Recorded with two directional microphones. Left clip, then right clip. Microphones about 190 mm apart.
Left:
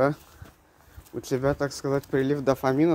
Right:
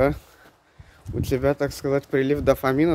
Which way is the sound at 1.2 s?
15° right (ahead or behind).